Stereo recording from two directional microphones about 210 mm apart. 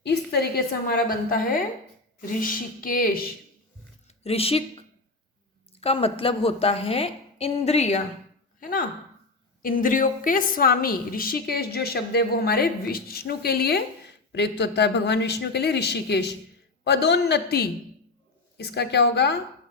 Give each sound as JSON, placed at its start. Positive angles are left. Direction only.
{"t": 0.0, "sound": "a woman's voice", "side_deg": 50}
{"t": 4.2, "sound": "a woman's voice", "side_deg": 30}
{"t": 5.8, "sound": "a woman's voice", "side_deg": 25}
{"t": 9.6, "sound": "a woman's voice", "side_deg": 40}